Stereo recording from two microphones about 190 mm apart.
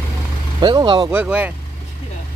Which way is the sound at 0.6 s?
25° right (ahead or behind).